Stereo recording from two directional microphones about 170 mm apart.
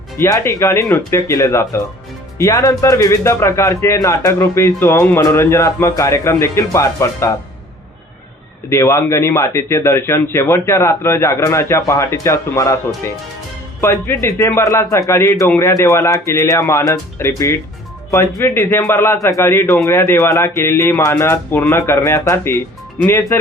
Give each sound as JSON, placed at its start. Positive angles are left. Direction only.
{"t": 0.2, "sound": "a man's voice", "side_deg": 15}
{"t": 8.7, "sound": "a man's voice", "side_deg": 15}
{"t": 13.8, "sound": "a man's voice", "side_deg": 15}